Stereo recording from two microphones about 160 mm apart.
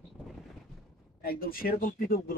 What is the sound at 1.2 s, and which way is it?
Speech, 65° left (ahead or behind).